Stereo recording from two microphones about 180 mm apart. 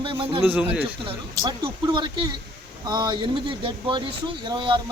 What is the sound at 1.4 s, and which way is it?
Speech, 25° right (ahead or behind).